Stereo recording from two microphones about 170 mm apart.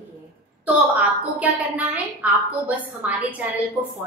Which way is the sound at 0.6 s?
10° right (ahead or behind).